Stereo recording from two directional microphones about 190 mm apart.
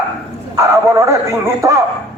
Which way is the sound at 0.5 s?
15° right (ahead or behind).